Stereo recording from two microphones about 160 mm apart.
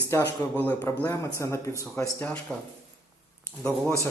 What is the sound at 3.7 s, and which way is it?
Speech, 15° left (ahead or behind).